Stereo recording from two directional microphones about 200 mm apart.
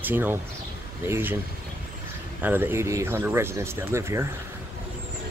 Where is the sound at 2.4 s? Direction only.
10° right (ahead or behind).